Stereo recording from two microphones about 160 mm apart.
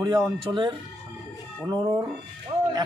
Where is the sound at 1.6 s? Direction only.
20° right (ahead or behind).